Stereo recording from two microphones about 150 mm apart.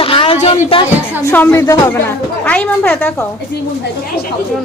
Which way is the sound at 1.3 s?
20° left (ahead or behind).